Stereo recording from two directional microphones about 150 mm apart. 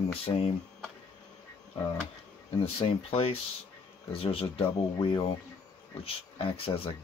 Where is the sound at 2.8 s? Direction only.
40° left (ahead or behind).